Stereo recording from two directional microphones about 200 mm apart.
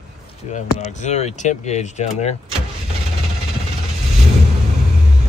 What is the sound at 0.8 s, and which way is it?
Speech, 35° left (ahead or behind).